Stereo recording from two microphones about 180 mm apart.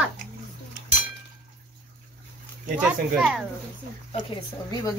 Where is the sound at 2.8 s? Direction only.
5° right (ahead or behind).